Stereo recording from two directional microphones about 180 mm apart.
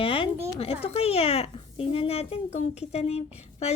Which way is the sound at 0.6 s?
35° left (ahead or behind).